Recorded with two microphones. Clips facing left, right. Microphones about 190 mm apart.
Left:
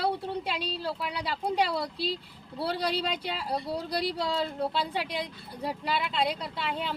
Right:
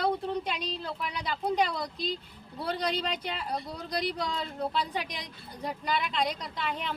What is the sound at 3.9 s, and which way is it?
Speech, 30° left (ahead or behind).